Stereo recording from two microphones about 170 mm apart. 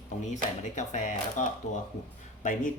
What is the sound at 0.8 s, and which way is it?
Speech, 45° left (ahead or behind).